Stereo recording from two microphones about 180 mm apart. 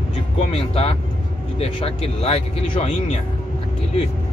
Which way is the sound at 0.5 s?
35° left (ahead or behind).